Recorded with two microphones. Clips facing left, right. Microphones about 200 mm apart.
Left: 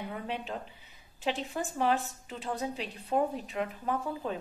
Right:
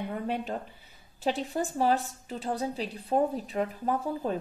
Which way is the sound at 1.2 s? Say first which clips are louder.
Right 4 dB; 40° right (ahead or behind).